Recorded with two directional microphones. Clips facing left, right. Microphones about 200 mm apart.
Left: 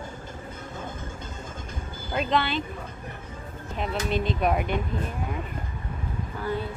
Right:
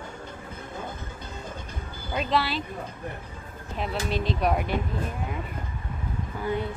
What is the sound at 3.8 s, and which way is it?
Speech, centre (ahead or behind).